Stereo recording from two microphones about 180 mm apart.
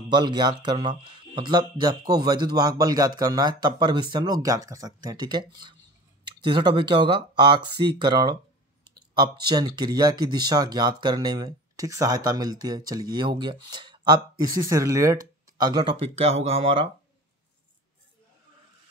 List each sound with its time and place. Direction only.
0.1 s speech: 25° right (ahead or behind)